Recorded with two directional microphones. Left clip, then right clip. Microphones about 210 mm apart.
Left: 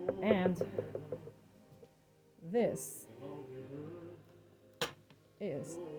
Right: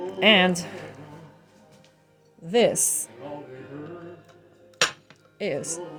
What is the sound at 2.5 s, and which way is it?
Speech, 25° right (ahead or behind).